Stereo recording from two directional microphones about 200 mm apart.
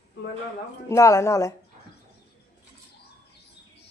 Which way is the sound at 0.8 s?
15° left (ahead or behind).